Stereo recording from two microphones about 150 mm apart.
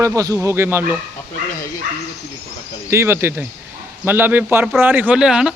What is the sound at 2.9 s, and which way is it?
Speech, 15° right (ahead or behind).